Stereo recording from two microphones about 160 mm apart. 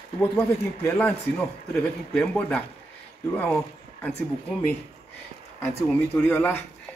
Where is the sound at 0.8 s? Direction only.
10° left (ahead or behind).